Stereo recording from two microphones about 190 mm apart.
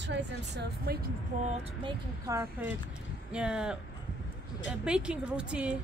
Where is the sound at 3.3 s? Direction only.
5° right (ahead or behind).